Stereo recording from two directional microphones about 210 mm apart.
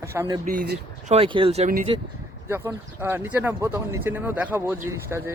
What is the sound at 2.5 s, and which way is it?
Speech, 10° right (ahead or behind).